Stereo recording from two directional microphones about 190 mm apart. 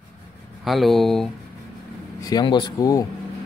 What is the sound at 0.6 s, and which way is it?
Speech, centre (ahead or behind).